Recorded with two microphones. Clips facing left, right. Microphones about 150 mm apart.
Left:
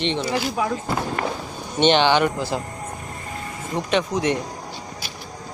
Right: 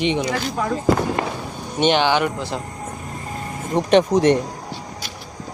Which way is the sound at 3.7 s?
40° right (ahead or behind).